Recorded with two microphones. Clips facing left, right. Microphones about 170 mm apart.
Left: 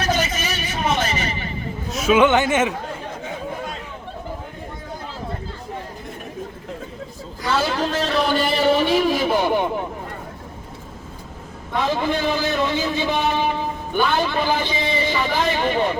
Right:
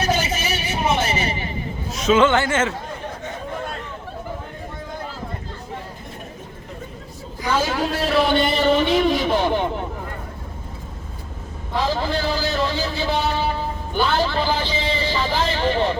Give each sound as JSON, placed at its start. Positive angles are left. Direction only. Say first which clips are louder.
{"t": 0.0, "sound": "vehicle", "louder": "even", "side_deg": -30}
{"t": 1.9, "sound": "speech", "louder": "left 1 dB", "side_deg": 5}
{"t": 7.5, "sound": "a man's voice", "louder": "even", "side_deg": -10}
{"t": 12.0, "sound": "a man's voice", "louder": "left 2 dB", "side_deg": 20}